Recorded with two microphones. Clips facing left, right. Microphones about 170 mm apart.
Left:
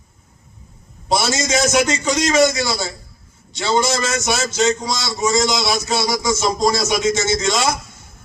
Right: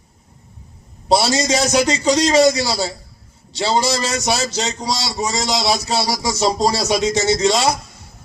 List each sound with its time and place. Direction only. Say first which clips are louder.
1.0 s a man's voice: right 3 dB; 35° right (ahead or behind)